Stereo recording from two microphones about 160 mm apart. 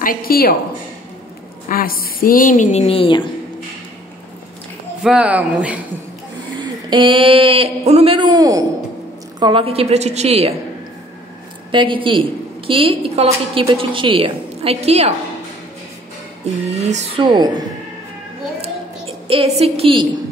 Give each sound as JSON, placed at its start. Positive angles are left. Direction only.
{"t": 0.0, "sound": "a woman's voice", "side_deg": 65}
{"t": 1.7, "sound": "a woman's voice", "side_deg": 65}
{"t": 5.0, "sound": "speech", "side_deg": -5}
{"t": 6.9, "sound": "a woman's voice", "side_deg": -30}
{"t": 9.4, "sound": "a woman's voice", "side_deg": -35}
{"t": 11.7, "sound": "a woman's voice", "side_deg": -30}
{"t": 16.4, "sound": "music", "side_deg": -45}
{"t": 17.2, "sound": "a woman's voice", "side_deg": -30}
{"t": 18.6, "sound": "a sound", "side_deg": -35}